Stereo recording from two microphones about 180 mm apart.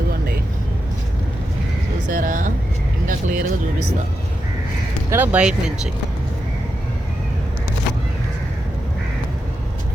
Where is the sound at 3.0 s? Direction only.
50° right (ahead or behind).